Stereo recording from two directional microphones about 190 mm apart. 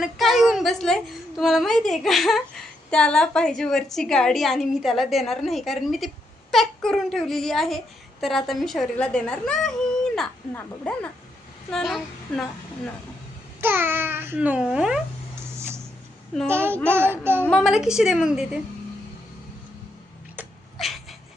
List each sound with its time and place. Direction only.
0.0 s a woman's voice: centre (ahead or behind)
13.6 s speech: 10° right (ahead or behind)
17.4 s speech: centre (ahead or behind)
20.3 s a sound: 5° right (ahead or behind)